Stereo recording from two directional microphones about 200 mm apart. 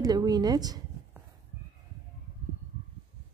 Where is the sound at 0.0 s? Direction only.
20° right (ahead or behind).